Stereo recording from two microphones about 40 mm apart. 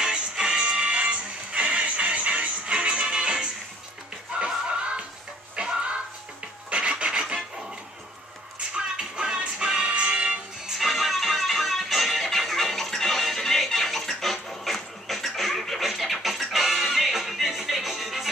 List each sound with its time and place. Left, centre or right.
0.0 s music: right
4.5 s music: right
6.7 s filing: right
8.7 s music: right
10.8 s music: centre